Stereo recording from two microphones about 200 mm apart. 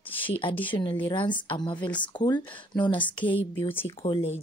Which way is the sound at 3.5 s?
10° left (ahead or behind).